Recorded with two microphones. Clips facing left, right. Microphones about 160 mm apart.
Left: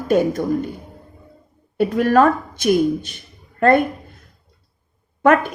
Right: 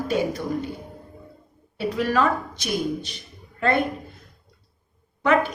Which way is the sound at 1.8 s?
50° left (ahead or behind).